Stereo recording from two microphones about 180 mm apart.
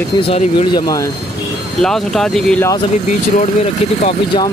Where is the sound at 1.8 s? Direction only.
Centre (ahead or behind).